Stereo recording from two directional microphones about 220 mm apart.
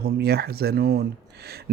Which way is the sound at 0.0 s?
45° right (ahead or behind).